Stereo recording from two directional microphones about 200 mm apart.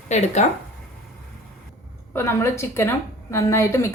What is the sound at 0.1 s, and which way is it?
Speech, 35° left (ahead or behind).